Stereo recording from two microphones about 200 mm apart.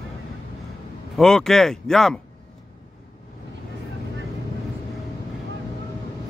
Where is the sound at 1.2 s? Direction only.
5° left (ahead or behind).